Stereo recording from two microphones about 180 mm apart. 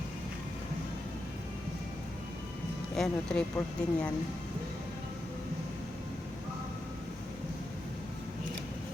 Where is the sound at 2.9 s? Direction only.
5° left (ahead or behind).